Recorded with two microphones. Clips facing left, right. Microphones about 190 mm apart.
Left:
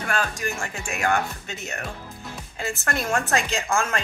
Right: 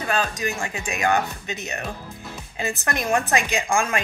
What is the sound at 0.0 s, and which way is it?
A woman's voice, 20° right (ahead or behind).